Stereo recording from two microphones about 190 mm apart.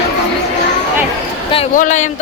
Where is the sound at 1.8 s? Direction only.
40° left (ahead or behind).